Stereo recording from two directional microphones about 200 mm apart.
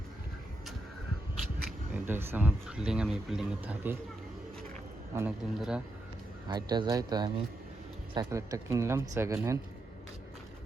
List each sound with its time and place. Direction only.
1.9 s speech: 10° right (ahead or behind)
5.1 s a man's voice: 5° right (ahead or behind)
6.5 s speech: 20° right (ahead or behind)